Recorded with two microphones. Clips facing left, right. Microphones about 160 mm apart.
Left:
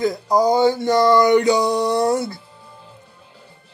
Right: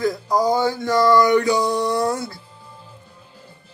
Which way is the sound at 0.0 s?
20° left (ahead or behind).